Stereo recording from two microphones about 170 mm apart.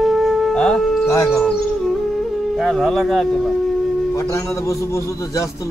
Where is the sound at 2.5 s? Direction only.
Centre (ahead or behind).